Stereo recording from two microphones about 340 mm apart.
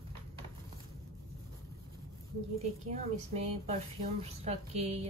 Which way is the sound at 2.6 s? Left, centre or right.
Centre.